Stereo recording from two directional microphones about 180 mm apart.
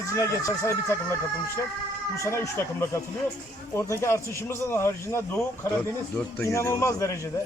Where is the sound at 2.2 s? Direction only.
15° left (ahead or behind).